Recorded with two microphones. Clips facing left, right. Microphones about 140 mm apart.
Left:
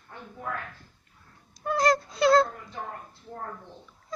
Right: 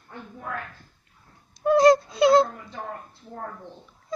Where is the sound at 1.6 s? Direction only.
25° right (ahead or behind).